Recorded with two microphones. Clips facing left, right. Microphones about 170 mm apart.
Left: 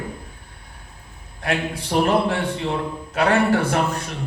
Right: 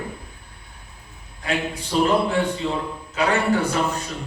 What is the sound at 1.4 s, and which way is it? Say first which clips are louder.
A man's voice: left 2 dB; 65° left (ahead or behind).